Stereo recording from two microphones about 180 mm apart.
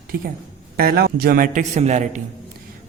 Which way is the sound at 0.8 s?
60° right (ahead or behind).